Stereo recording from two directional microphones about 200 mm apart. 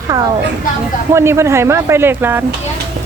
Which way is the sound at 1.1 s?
15° right (ahead or behind).